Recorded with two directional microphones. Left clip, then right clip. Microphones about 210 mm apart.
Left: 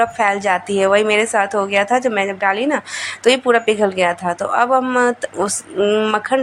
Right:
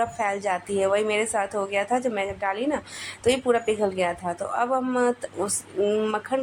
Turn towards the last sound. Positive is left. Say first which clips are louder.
# left 9 dB
turn(degrees=15)  # may be behind; listen again after turning